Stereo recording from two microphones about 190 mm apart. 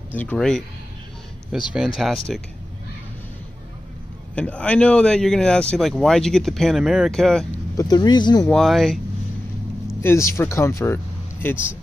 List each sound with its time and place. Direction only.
0.1 s speech: 10° left (ahead or behind)
4.4 s speech: 5° left (ahead or behind)
7.7 s speech: 20° left (ahead or behind)
8.5 s speech: centre (ahead or behind)
10.0 s speech: 15° left (ahead or behind)